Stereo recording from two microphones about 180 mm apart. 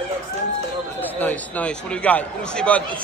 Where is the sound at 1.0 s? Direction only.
10° left (ahead or behind).